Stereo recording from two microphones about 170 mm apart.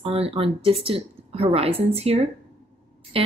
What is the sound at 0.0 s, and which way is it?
Speech, 35° right (ahead or behind).